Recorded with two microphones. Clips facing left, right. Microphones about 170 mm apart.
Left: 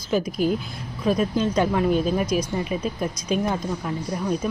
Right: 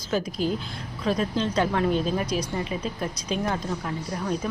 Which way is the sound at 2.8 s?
10° left (ahead or behind).